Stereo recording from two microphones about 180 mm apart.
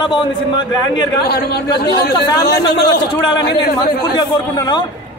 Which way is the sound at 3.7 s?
25° left (ahead or behind).